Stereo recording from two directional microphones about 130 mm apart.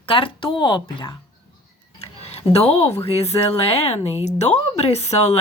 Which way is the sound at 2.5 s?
50° left (ahead or behind).